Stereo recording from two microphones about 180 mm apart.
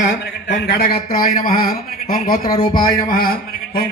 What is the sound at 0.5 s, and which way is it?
A man's voice, 60° left (ahead or behind).